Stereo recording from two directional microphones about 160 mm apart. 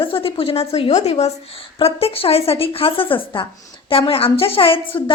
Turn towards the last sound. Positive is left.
turn(degrees=35)  # may be behind; listen again after turning